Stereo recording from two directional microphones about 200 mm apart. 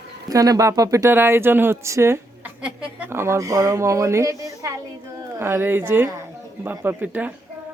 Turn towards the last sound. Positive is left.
turn(degrees=-10)  # may be behind; listen again after turning